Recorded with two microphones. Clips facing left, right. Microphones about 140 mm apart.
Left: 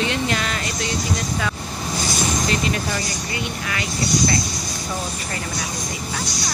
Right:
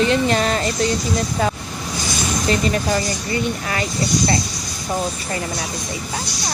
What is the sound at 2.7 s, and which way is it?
Speech, 35° right (ahead or behind).